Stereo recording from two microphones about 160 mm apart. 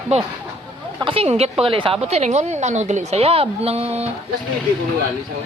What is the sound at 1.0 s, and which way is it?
A woman's voice, 35° right (ahead or behind).